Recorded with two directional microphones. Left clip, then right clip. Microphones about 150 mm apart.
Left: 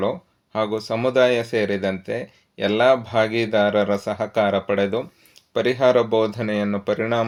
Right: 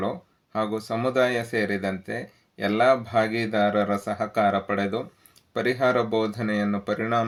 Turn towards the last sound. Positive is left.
turn(degrees=30)  # may be behind; listen again after turning